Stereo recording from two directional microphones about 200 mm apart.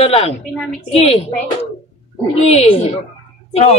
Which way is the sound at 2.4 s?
30° left (ahead or behind).